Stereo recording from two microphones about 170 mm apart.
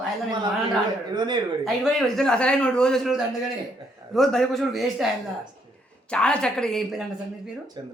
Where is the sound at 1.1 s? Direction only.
25° right (ahead or behind).